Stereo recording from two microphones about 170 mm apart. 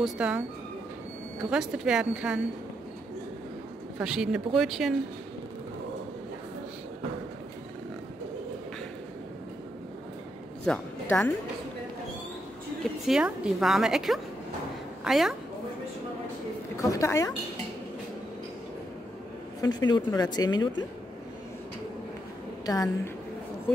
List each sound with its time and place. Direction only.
0.0 s speech: 5° right (ahead or behind)
1.4 s a woman's voice: 5° right (ahead or behind)
4.0 s a woman's voice: 5° right (ahead or behind)
10.6 s a woman's voice: 5° left (ahead or behind)
13.0 s a woman's voice: 5° right (ahead or behind)
16.7 s a woman's voice: 20° left (ahead or behind)
19.6 s speech: 25° left (ahead or behind)